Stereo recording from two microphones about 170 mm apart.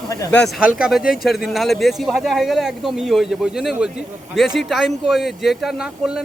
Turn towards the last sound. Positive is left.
turn(degrees=-5)  # may be behind; listen again after turning